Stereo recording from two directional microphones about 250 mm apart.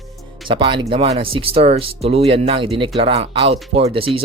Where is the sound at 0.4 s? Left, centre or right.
Centre.